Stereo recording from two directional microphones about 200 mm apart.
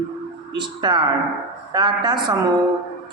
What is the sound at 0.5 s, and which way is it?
A man's voice, 20° right (ahead or behind).